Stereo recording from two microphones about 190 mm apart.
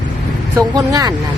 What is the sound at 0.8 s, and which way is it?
Speech, 20° right (ahead or behind).